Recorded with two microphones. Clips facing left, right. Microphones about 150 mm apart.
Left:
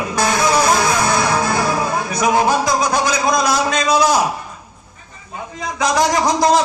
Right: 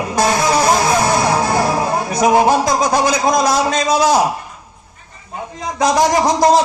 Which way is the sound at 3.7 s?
30° right (ahead or behind).